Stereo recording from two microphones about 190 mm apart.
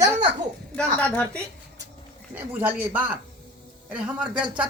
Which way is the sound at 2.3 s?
10° right (ahead or behind).